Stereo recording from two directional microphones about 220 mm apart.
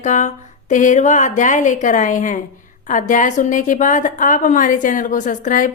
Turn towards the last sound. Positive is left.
turn(degrees=35)  # may be behind; listen again after turning